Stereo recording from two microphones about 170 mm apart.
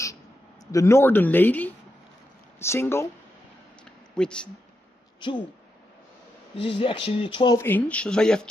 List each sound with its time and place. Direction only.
0.7 s speech: 20° left (ahead or behind)
4.1 s speech: 5° left (ahead or behind)
5.2 s speech: 30° left (ahead or behind)
6.5 s speech: 35° left (ahead or behind)
7.5 s speech: 10° left (ahead or behind)